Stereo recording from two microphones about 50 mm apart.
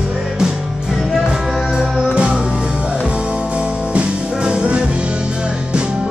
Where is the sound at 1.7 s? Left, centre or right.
Right.